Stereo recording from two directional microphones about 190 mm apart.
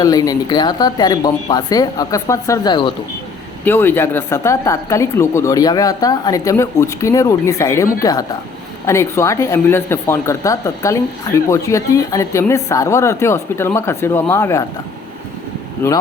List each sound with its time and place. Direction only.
0.0 s speech: 20° left (ahead or behind)
3.6 s speech: 10° left (ahead or behind)
15.8 s speech: 15° left (ahead or behind)